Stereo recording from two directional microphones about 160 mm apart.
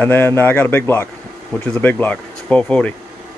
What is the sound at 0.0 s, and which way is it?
Speech, 15° left (ahead or behind).